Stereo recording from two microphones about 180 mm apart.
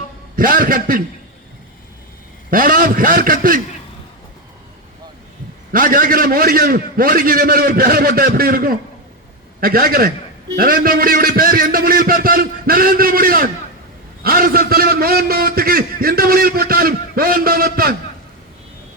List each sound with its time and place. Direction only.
0.3 s a man's voice: 50° right (ahead or behind)
2.5 s a man's voice: 50° right (ahead or behind)
5.7 s a man's voice: 50° right (ahead or behind)